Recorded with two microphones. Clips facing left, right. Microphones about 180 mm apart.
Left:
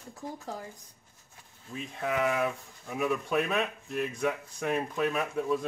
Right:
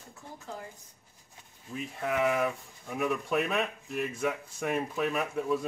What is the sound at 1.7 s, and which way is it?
Speech, centre (ahead or behind).